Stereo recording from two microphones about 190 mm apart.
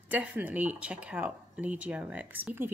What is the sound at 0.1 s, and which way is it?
Speech, 10° right (ahead or behind).